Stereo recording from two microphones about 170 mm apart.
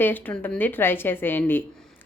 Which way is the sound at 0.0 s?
10° left (ahead or behind).